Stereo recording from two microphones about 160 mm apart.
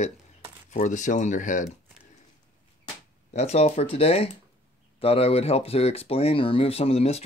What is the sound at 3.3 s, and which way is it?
Speech, 45° left (ahead or behind).